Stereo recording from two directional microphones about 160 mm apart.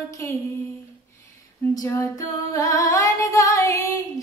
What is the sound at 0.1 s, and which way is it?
Female singing, 20° left (ahead or behind).